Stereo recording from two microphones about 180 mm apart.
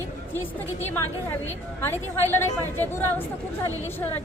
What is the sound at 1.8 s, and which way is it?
A woman's voice, 15° left (ahead or behind).